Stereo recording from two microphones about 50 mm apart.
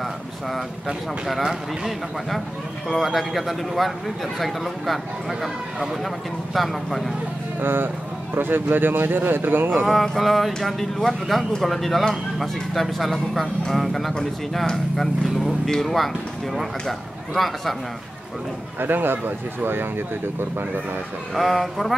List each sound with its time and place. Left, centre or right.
0.8 s speech: centre
7.6 s speech: right
9.8 s speech: centre
18.8 s speech: right
21.4 s speech: centre